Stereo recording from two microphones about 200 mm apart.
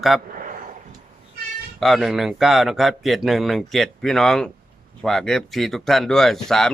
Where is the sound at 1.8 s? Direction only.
Centre (ahead or behind).